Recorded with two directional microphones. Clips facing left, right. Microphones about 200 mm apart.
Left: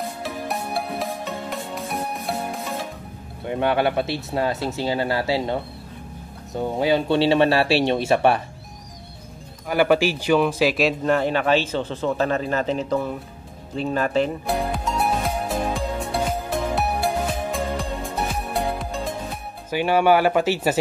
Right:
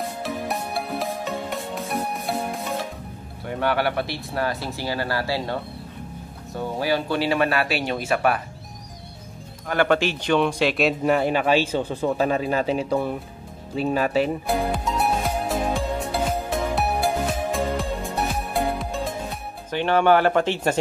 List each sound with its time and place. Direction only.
0.0 s music: centre (ahead or behind)
3.4 s speech: 20° left (ahead or behind)
9.7 s a man's voice: 10° left (ahead or behind); by 13.1 s 10° right (ahead or behind)
13.7 s music: 5° right (ahead or behind)
19.7 s speech: 10° left (ahead or behind)